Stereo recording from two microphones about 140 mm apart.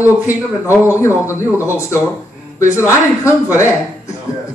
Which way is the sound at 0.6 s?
15° right (ahead or behind).